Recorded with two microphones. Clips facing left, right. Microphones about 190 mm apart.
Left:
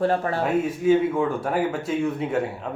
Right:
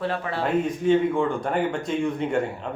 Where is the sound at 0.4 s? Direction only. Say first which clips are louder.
Even; 5° left (ahead or behind).